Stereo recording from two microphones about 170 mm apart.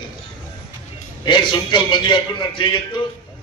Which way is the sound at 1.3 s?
30° left (ahead or behind).